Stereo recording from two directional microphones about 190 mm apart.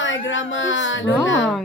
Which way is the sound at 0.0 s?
85° left.